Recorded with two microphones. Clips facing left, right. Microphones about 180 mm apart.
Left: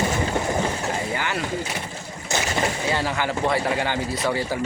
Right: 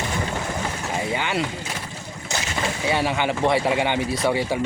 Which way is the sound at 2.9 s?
20° right (ahead or behind).